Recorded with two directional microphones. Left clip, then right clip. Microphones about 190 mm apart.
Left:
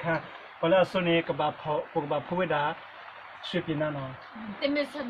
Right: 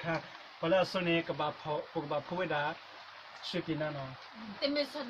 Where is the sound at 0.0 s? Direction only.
5° left (ahead or behind).